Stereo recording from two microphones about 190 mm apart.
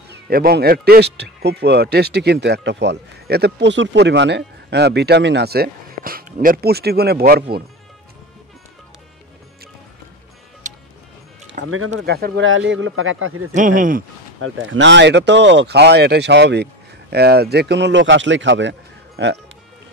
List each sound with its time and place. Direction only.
0.1 s a man's voice: 55° right (ahead or behind)
10.6 s music: 40° right (ahead or behind)
11.6 s speech: 45° right (ahead or behind)
12.0 s speech: 65° right (ahead or behind); by 13.5 s 90° right
13.5 s speech: 45° right (ahead or behind)
14.4 s a man's voice: 80° right